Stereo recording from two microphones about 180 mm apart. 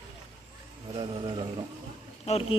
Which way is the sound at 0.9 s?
25° right (ahead or behind).